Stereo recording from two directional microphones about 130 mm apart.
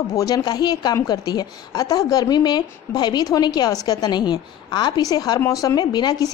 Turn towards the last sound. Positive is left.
turn(degrees=30)  # may be behind; listen again after turning